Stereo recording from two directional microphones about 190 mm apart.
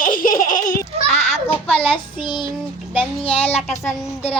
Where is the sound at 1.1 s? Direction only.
35° left (ahead or behind).